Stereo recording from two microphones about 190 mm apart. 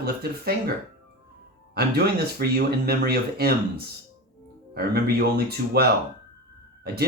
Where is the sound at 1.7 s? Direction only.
55° right (ahead or behind).